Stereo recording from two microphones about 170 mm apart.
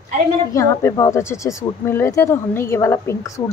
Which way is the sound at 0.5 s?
20° left (ahead or behind).